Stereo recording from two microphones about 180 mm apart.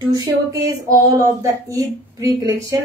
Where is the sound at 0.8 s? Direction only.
20° right (ahead or behind).